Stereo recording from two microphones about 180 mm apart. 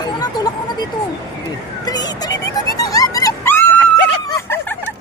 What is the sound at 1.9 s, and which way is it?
Music, 20° left (ahead or behind).